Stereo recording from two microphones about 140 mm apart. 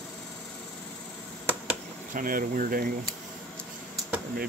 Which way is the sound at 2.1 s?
85° right.